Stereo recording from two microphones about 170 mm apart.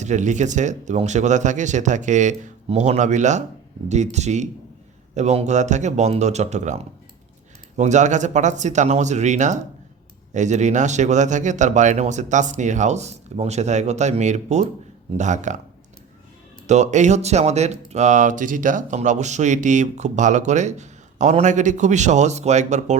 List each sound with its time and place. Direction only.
0.0 s speech: 45° right (ahead or behind)
16.6 s speech: 45° right (ahead or behind)